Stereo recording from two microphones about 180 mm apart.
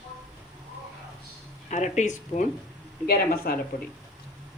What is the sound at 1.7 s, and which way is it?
Speech, 40° left (ahead or behind).